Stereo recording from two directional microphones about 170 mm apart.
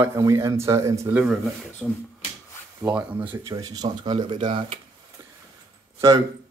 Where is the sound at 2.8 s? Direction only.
10° right (ahead or behind).